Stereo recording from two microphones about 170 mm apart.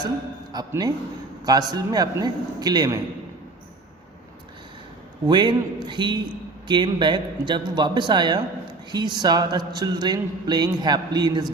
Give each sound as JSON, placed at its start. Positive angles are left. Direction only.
{"t": 0.5, "sound": "speech", "side_deg": -20}
{"t": 5.2, "sound": "speech", "side_deg": -25}